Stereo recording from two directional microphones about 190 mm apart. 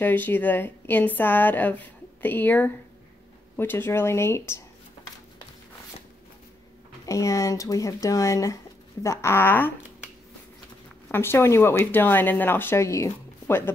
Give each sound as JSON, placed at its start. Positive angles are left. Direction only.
{"t": 0.0, "sound": "speech", "side_deg": 10}
{"t": 7.1, "sound": "speech", "side_deg": 15}
{"t": 11.1, "sound": "speech", "side_deg": 10}